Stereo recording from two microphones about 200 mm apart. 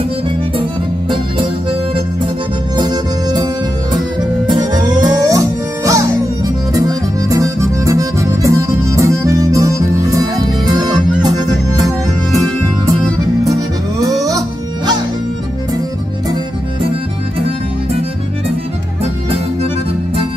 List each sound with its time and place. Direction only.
2.8 s music: 20° right (ahead or behind)
4.5 s music: 20° right (ahead or behind)
6.7 s accordion: 20° right (ahead or behind)
10.7 s music: 20° right (ahead or behind)
13.9 s music: 15° right (ahead or behind)